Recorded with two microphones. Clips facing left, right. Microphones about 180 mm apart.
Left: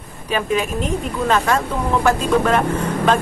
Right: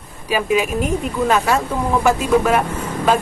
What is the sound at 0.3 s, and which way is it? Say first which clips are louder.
Speech: right 2 dB; 10° right (ahead or behind).